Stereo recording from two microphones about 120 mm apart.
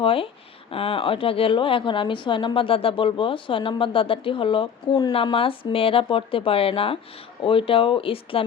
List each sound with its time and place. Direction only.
0.0 s a woman's voice: 50° left (ahead or behind)
5.1 s a woman's voice: 50° left (ahead or behind)